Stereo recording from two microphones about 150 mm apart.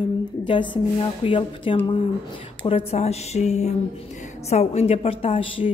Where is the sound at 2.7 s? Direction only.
40° left (ahead or behind).